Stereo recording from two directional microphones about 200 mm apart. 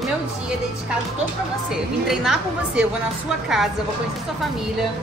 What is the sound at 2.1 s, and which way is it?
Speech, centre (ahead or behind).